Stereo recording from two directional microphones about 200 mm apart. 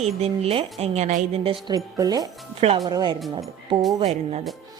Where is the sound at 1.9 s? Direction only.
20° right (ahead or behind).